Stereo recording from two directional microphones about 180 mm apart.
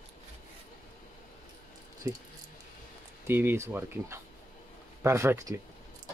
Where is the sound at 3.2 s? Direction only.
10° right (ahead or behind).